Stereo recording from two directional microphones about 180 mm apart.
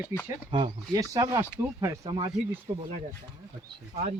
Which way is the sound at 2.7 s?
35° right (ahead or behind).